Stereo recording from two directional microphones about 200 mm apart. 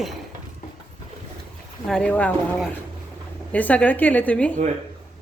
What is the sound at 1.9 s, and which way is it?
A woman's voice, 5° left (ahead or behind).